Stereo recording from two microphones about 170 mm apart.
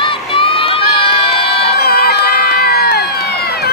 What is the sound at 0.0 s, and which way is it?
Crowd, 30° left (ahead or behind).